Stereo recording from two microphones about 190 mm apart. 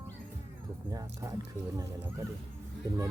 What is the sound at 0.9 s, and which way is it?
Music, 20° right (ahead or behind).